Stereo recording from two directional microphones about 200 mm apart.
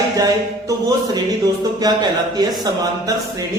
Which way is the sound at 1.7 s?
20° right (ahead or behind).